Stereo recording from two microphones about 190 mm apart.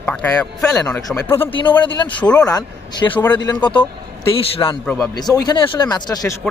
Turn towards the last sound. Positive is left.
turn(degrees=20)  # may be behind; listen again after turning